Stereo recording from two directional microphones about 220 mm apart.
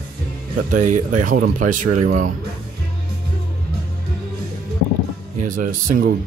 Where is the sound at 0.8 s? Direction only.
35° right (ahead or behind).